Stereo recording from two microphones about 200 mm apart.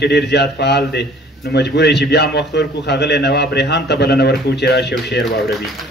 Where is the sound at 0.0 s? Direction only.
55° left (ahead or behind).